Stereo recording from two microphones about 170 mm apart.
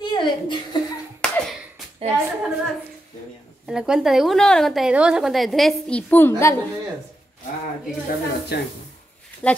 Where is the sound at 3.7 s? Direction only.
5° right (ahead or behind); by 6.5 s 15° left (ahead or behind).